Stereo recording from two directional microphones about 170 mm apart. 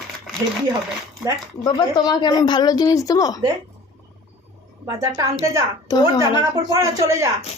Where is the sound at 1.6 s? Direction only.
25° left (ahead or behind).